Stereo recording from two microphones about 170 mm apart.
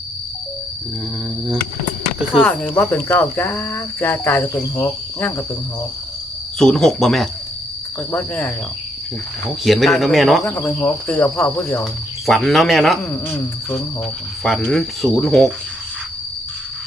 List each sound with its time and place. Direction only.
2.4 s speech: 10° left (ahead or behind)
6.6 s cricket: centre (ahead or behind)
8.1 s speech: 10° left (ahead or behind)
9.6 s cricket: centre (ahead or behind)
10.4 s speech: 10° left (ahead or behind)
12.2 s cricket: centre (ahead or behind)
13.1 s speech: 10° left (ahead or behind)
14.4 s cricket: centre (ahead or behind)